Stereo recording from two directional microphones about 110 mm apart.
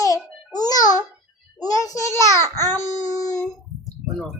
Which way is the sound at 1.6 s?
30° left (ahead or behind).